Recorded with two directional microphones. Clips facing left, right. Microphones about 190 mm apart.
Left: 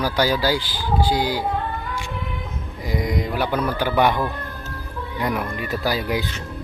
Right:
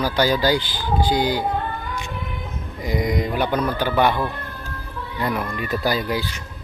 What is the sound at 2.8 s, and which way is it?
Speech, centre (ahead or behind).